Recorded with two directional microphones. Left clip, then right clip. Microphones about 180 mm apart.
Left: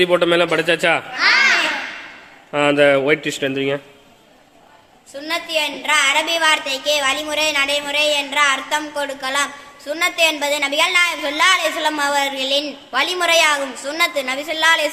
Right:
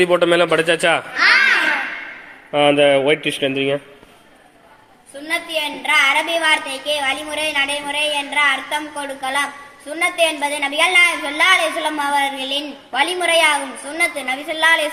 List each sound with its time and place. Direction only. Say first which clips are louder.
0.0 s a man's voice: right 1 dB; centre (ahead or behind)
1.1 s speech: right 2 dB; 25° right (ahead or behind)
2.5 s a man's voice: right 1 dB; centre (ahead or behind)
5.3 s a woman's voice: left 1 dB; 15° left (ahead or behind)